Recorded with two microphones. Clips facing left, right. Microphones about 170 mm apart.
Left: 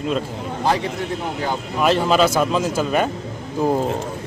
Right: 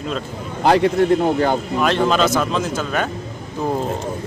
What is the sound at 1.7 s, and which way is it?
Speech, 5° left (ahead or behind).